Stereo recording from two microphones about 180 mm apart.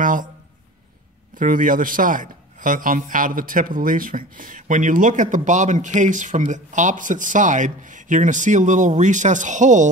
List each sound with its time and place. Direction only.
0.0 s speech: 45° right (ahead or behind)
1.3 s a man's voice: 50° right (ahead or behind)